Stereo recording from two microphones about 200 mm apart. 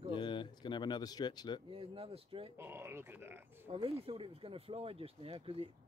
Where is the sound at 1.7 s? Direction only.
30° right (ahead or behind).